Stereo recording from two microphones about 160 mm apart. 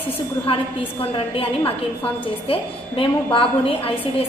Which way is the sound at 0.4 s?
35° left (ahead or behind).